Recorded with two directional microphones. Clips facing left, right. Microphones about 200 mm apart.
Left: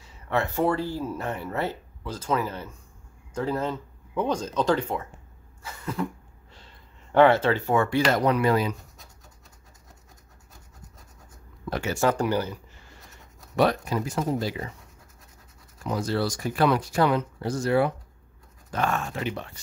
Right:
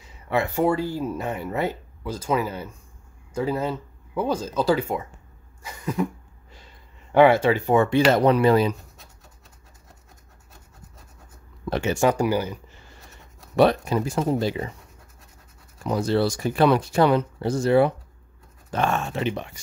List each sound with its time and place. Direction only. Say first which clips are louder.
0.0 s speech: right 2 dB; 10° right (ahead or behind)
5.6 s cough: right 4 dB; 15° right (ahead or behind)
6.5 s speech: right 2 dB; 10° right (ahead or behind); by 9.0 s 30° right (ahead or behind)
11.7 s speech: right 3 dB; 20° right (ahead or behind)
13.6 s speech: right 4 dB; 25° right (ahead or behind)
15.8 s speech: right 5 dB; 25° right (ahead or behind)